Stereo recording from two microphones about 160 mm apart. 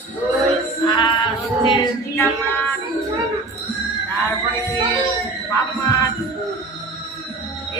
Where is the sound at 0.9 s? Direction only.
30° left (ahead or behind).